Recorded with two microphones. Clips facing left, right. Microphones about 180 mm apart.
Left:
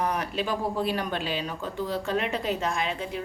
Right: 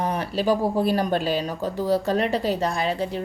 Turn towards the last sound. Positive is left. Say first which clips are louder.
# right 5 dB
turn(degrees=-35)  # may be behind; listen again after turning